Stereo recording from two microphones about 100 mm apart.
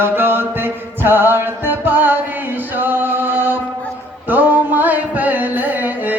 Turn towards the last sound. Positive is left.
turn(degrees=-20)  # may be behind; listen again after turning